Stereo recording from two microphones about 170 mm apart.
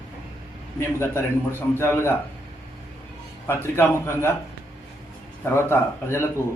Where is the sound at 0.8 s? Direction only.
15° left (ahead or behind).